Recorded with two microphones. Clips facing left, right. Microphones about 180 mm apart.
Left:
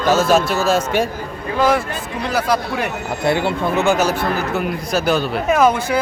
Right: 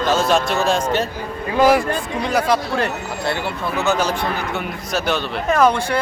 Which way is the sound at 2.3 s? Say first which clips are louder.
Even; 5° left (ahead or behind).